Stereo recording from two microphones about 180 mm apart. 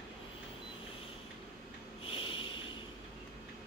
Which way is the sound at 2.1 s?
30° left (ahead or behind).